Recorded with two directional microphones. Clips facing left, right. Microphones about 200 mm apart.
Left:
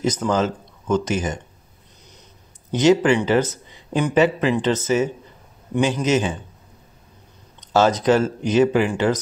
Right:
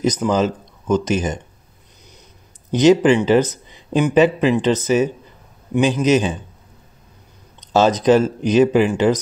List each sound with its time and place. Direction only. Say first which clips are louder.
0.0 s speech: right 3 dB; 15° right (ahead or behind)
2.7 s speech: right 3 dB; 15° right (ahead or behind)
7.7 s speech: right 3 dB; 15° right (ahead or behind)